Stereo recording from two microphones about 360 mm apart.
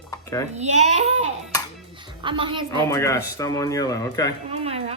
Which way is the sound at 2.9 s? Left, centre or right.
Centre.